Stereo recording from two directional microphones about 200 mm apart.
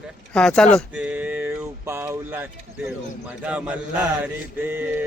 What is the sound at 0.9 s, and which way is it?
Speech, 5° right (ahead or behind).